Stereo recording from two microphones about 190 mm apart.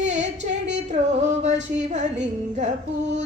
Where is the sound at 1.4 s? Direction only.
35° right (ahead or behind).